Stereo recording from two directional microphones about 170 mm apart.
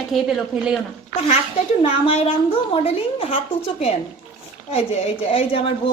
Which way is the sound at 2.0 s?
35° left (ahead or behind).